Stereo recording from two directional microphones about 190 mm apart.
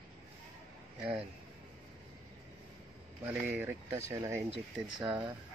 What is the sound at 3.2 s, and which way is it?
Speech, 10° right (ahead or behind).